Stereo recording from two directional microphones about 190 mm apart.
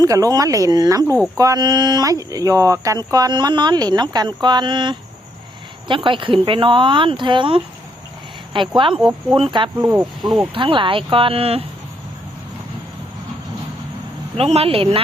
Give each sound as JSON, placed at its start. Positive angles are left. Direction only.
{"t": 0.0, "sound": "speech", "side_deg": -20}
{"t": 14.3, "sound": "speech", "side_deg": -30}